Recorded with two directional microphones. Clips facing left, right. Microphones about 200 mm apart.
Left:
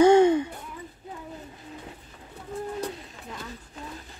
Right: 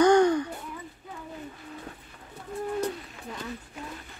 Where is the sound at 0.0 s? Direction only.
25° left (ahead or behind).